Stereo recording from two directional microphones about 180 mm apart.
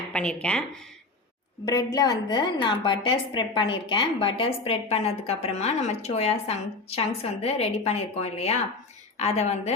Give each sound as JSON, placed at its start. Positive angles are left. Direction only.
{"t": 0.1, "sound": "speech", "side_deg": 5}
{"t": 1.6, "sound": "a woman's voice", "side_deg": 20}